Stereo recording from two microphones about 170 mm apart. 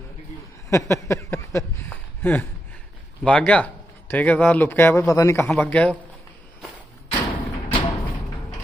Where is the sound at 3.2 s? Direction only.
10° left (ahead or behind).